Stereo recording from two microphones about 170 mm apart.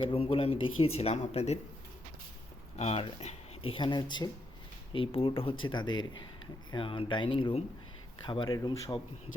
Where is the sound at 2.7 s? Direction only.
40° left (ahead or behind).